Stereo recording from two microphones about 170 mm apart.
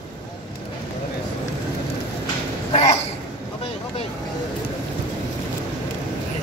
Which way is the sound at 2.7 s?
40° left (ahead or behind).